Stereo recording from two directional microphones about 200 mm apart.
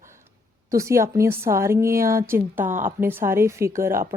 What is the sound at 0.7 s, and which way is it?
A woman's voice, 15° right (ahead or behind).